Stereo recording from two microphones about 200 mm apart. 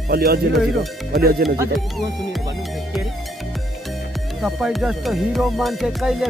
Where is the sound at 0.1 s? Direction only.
50° right (ahead or behind).